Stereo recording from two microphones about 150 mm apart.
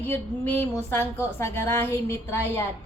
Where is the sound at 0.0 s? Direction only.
15° left (ahead or behind).